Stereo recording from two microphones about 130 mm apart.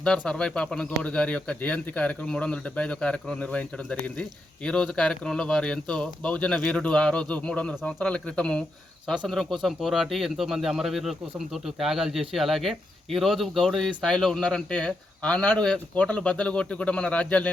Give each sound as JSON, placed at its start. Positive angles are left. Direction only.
{"t": 0.0, "sound": "speech", "side_deg": 5}